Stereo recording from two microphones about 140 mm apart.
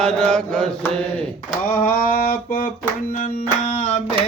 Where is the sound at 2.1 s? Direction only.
85° left.